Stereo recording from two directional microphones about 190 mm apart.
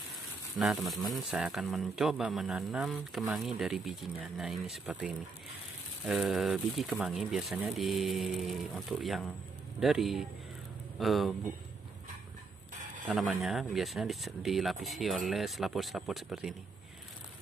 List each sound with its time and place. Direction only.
0.6 s speech: centre (ahead or behind)
13.0 s speech: centre (ahead or behind)